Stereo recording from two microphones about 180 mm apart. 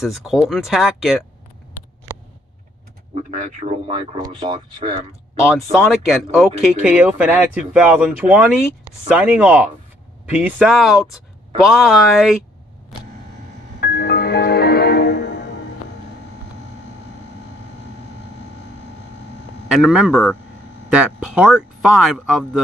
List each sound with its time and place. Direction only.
0.0 s speech: centre (ahead or behind)
3.2 s speech: 45° right (ahead or behind)
3.8 s speech: 30° right (ahead or behind)
5.5 s speech: centre (ahead or behind)
13.7 s music: 60° left (ahead or behind)
19.7 s speech: 5° right (ahead or behind)